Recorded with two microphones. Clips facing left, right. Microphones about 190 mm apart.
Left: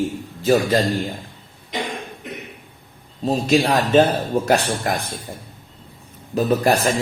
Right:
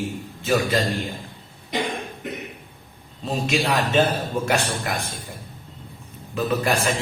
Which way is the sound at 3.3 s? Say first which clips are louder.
Left 5 dB; 35° left (ahead or behind).